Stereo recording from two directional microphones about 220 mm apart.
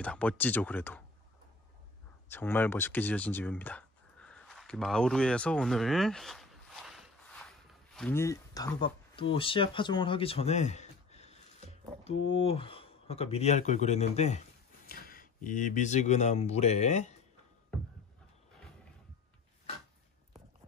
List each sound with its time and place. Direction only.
0.0 s speech: 5° left (ahead or behind)
2.2 s speech: 10° left (ahead or behind); by 14.4 s 30° left (ahead or behind)
14.9 s speech: 40° left (ahead or behind)